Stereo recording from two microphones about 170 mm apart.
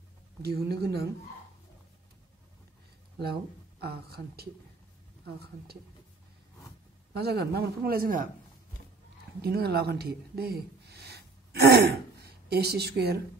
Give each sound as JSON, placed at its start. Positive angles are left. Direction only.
{"t": 0.4, "sound": "speech", "side_deg": -70}
{"t": 3.8, "sound": "speech", "side_deg": -70}
{"t": 7.2, "sound": "speech", "side_deg": -70}
{"t": 9.4, "sound": "speech", "side_deg": -70}